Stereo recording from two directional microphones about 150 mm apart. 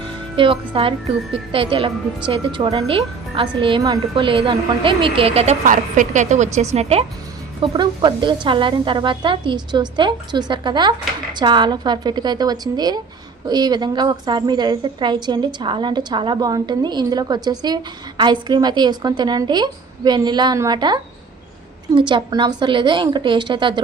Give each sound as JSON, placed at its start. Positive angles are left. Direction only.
{"t": 0.3, "sound": "a woman's voice", "side_deg": -35}
{"t": 5.6, "sound": "a woman's voice", "side_deg": -60}
{"t": 7.7, "sound": "a woman's voice", "side_deg": -30}